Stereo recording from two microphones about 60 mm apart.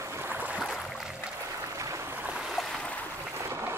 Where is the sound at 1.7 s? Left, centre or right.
Right.